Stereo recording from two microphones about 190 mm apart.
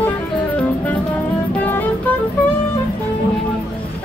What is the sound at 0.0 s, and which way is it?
Music, 10° left (ahead or behind).